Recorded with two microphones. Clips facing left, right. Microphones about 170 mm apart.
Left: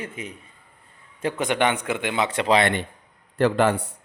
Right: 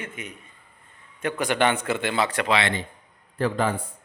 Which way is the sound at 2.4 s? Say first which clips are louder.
Left 8 dB; 40° left (ahead or behind).